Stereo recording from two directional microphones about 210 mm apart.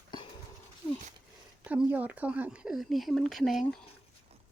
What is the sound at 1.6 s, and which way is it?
Speech, 5° right (ahead or behind).